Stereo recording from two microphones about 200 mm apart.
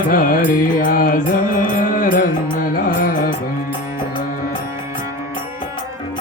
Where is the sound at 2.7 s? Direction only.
45° left (ahead or behind).